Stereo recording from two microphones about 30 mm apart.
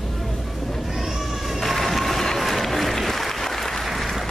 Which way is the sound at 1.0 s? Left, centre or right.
Centre.